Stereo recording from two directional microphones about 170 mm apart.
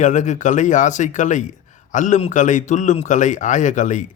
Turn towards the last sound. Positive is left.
turn(degrees=45)  # may be behind; listen again after turning